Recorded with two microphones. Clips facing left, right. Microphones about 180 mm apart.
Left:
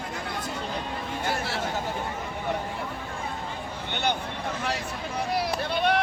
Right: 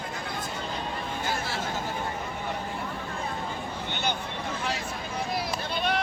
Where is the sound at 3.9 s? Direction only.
60° left (ahead or behind).